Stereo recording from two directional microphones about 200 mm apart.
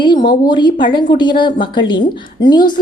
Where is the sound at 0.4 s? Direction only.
20° left (ahead or behind).